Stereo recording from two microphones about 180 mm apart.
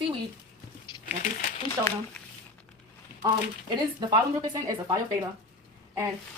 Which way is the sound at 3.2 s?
25° right (ahead or behind).